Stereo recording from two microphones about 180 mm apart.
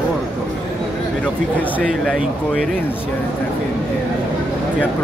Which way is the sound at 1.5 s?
10° left (ahead or behind).